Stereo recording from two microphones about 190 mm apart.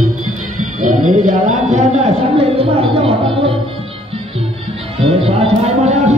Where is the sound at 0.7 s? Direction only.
40° right (ahead or behind).